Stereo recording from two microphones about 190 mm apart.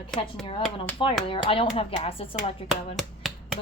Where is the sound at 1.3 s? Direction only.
30° left (ahead or behind).